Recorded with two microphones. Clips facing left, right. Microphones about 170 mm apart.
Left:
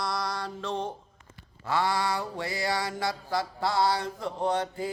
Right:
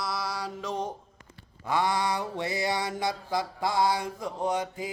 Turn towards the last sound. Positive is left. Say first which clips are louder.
# left 1 dB
turn(degrees=-10)  # may be behind; listen again after turning